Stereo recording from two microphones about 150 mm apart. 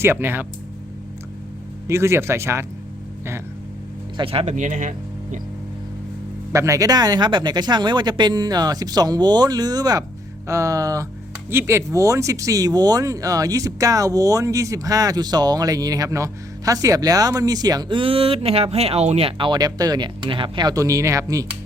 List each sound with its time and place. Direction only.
0.0 s speech: 15° right (ahead or behind)
1.9 s speech: 15° right (ahead or behind)
4.2 s speech: 40° right (ahead or behind); by 5.4 s 55° right (ahead or behind)
6.5 s speech: 20° right (ahead or behind)